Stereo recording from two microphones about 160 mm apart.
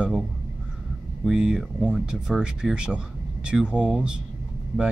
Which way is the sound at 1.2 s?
5° right (ahead or behind).